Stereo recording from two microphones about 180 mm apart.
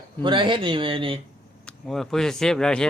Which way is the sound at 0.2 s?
25° right (ahead or behind).